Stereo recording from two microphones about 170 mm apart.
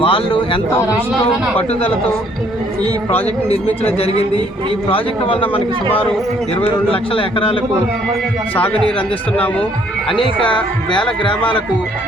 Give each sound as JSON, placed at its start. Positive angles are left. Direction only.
{"t": 0.0, "sound": "a man's voice", "side_deg": 30}
{"t": 3.8, "sound": "a man's voice", "side_deg": 35}
{"t": 9.0, "sound": "speech", "side_deg": 5}
{"t": 10.1, "sound": "speech", "side_deg": 30}